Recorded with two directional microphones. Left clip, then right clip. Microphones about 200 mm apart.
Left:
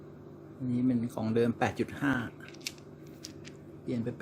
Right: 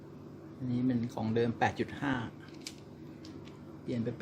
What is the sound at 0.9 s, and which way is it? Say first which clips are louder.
Speech: left 2 dB; 20° left (ahead or behind).